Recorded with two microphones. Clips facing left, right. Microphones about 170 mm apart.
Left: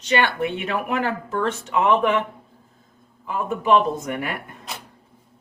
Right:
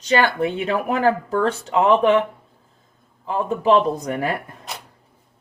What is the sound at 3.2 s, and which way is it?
Speech, 30° right (ahead or behind).